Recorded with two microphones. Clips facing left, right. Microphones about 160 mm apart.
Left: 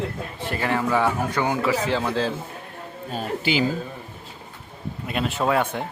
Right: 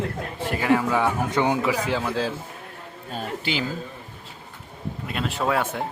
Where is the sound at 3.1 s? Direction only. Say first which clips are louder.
Left 4 dB; 5° left (ahead or behind).